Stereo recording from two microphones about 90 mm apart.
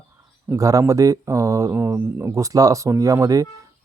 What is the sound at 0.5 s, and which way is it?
Speech, 40° right (ahead or behind).